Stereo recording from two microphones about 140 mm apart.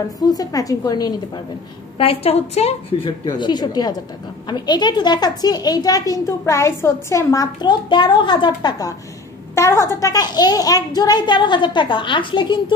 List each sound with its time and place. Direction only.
0.2 s a woman's voice: 25° left (ahead or behind)
2.0 s a woman's voice: 45° left (ahead or behind)
3.3 s a woman's voice: 30° left (ahead or behind)